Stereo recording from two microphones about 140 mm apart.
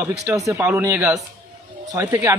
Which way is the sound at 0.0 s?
15° right (ahead or behind).